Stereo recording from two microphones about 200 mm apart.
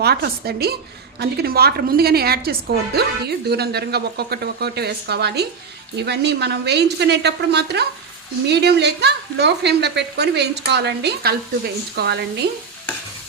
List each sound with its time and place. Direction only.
0.0 s a woman's voice: 55° right (ahead or behind)